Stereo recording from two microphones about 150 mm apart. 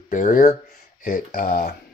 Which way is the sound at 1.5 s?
90° left.